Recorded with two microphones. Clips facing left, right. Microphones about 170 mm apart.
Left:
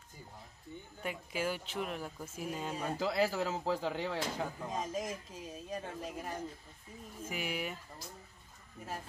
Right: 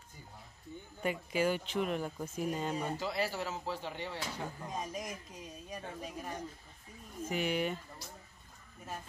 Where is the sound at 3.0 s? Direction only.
90° left.